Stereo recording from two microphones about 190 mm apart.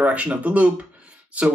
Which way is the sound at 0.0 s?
5° right (ahead or behind).